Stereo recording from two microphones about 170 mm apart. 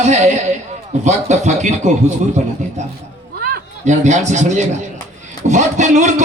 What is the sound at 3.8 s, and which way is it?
A man's voice, 45° right (ahead or behind).